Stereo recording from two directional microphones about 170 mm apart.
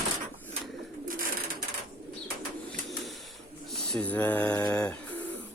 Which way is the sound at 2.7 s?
Centre (ahead or behind).